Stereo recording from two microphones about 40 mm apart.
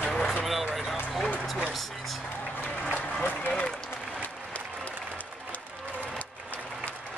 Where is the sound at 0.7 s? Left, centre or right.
Centre.